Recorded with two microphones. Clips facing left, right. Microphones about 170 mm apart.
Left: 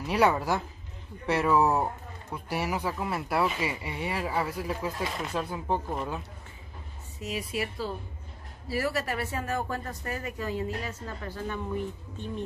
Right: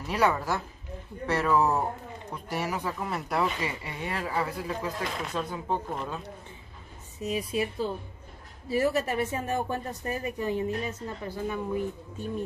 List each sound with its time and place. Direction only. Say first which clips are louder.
0.0 s speech: left 2 dB; 15° left (ahead or behind)
7.3 s speech: right 3 dB; 20° right (ahead or behind)